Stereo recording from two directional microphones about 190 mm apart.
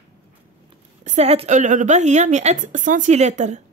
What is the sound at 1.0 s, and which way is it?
A woman's voice, 35° right (ahead or behind).